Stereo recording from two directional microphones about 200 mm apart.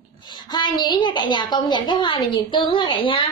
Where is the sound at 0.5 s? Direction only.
20° left (ahead or behind).